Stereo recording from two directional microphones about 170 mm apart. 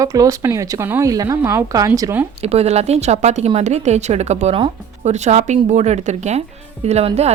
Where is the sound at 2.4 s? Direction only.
40° right (ahead or behind).